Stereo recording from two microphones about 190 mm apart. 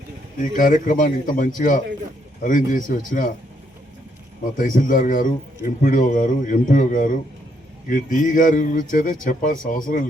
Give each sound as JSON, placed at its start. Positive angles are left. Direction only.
{"t": 0.5, "sound": "a man's voice", "side_deg": 45}
{"t": 4.5, "sound": "a man's voice", "side_deg": 45}